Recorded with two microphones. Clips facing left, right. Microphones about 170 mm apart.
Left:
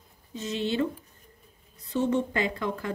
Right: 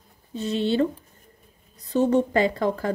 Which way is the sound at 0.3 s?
30° right (ahead or behind).